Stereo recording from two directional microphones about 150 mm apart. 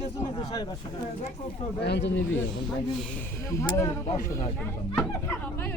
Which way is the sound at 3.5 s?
20° left (ahead or behind).